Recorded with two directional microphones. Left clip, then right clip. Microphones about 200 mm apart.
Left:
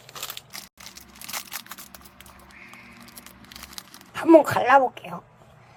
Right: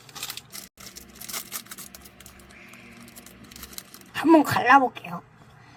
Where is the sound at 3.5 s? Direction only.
20° left (ahead or behind).